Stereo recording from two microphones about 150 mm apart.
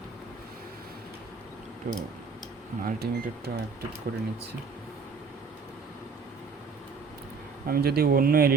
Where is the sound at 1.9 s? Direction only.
75° right (ahead or behind).